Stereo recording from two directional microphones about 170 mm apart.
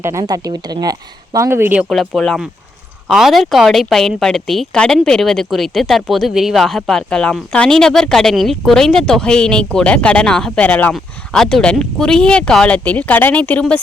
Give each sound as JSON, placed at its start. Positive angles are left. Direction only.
{"t": 0.0, "sound": "speech", "side_deg": -20}
{"t": 1.9, "sound": "a woman's voice", "side_deg": 0}